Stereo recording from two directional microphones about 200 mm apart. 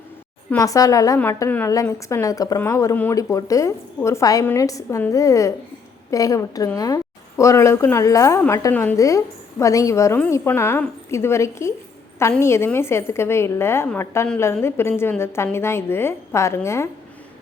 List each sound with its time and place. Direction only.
0.5 s a woman's voice: 15° left (ahead or behind)